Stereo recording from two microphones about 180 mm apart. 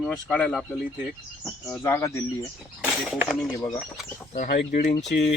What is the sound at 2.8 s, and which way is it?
Speech, centre (ahead or behind).